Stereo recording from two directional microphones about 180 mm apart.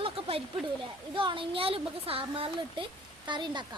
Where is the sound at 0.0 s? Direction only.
30° right (ahead or behind).